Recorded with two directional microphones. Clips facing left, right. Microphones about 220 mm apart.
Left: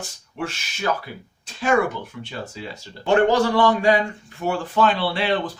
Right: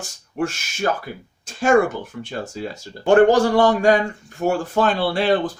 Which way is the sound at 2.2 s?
45° right (ahead or behind).